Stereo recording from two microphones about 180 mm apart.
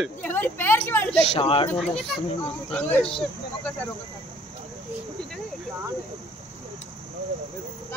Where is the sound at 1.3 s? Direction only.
30° left (ahead or behind).